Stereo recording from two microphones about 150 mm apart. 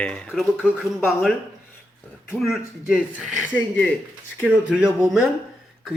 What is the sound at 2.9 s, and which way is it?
Speech, 5° right (ahead or behind).